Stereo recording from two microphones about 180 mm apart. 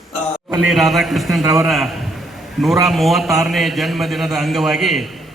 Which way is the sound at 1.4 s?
15° right (ahead or behind).